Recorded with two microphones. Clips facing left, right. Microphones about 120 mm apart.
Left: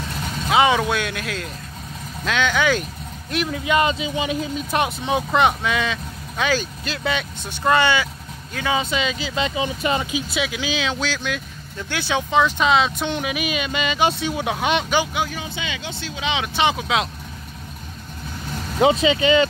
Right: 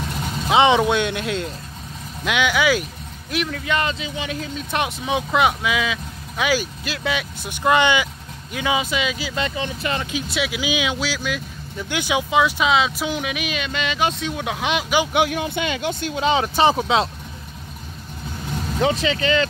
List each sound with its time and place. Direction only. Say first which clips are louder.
0.5 s speech: right 2 dB; 25° right (ahead or behind)
2.2 s speech: right 1 dB; 10° right (ahead or behind)
3.4 s speech: left 5 dB; 10° left (ahead or behind)
4.6 s speech: right 1 dB; 5° left (ahead or behind)
9.8 s speech: left 3 dB; 15° left (ahead or behind)
10.3 s speech: right 3 dB; 5° right (ahead or behind)
15.1 s speech: right 6 dB; 65° right (ahead or behind); by 17.1 s 30° right (ahead or behind)
18.8 s speech: left 4 dB; 20° left (ahead or behind)